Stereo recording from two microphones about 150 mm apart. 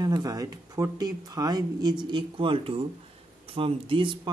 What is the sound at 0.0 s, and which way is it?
Speech, 25° right (ahead or behind).